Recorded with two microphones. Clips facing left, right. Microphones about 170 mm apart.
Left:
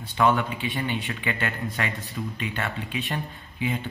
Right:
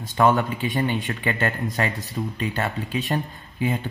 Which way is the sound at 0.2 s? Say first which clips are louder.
Right 3 dB; 45° right (ahead or behind).